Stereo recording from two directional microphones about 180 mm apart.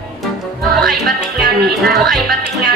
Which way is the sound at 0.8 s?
Centre (ahead or behind).